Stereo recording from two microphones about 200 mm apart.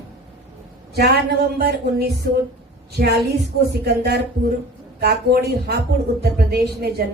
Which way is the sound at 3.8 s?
55° right (ahead or behind).